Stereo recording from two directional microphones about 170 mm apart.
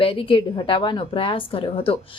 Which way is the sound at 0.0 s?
30° left (ahead or behind).